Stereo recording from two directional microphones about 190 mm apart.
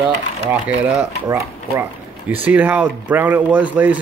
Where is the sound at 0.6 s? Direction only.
5° right (ahead or behind).